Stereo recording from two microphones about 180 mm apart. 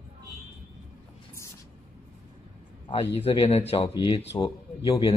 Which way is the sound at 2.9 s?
30° left (ahead or behind).